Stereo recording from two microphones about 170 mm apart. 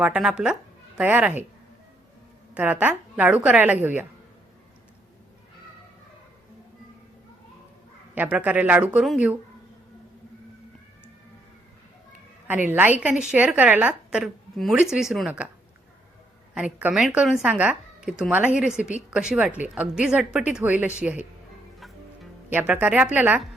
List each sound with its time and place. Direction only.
0.0 s a woman's voice: 5° right (ahead or behind)
2.6 s a woman's voice: 10° right (ahead or behind)
8.1 s a woman's voice: 10° right (ahead or behind)
12.7 s a woman's voice: 10° right (ahead or behind)
16.6 s a woman's voice: 5° right (ahead or behind)
21.8 s music: centre (ahead or behind)
22.4 s a woman's voice: 10° right (ahead or behind)